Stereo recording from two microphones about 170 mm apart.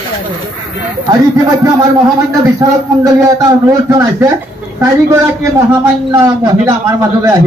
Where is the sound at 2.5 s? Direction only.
20° right (ahead or behind).